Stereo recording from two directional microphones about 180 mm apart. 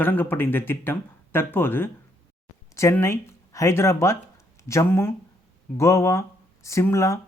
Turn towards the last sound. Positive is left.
turn(degrees=15)  # may be behind; listen again after turning